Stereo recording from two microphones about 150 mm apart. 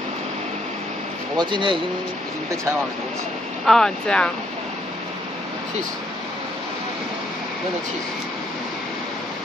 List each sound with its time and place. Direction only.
1.3 s speech: 30° right (ahead or behind)
3.6 s speech: 5° left (ahead or behind)